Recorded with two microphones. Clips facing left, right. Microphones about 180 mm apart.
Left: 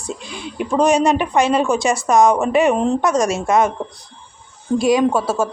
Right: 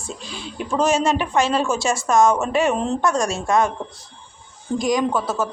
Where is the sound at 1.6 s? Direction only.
15° left (ahead or behind).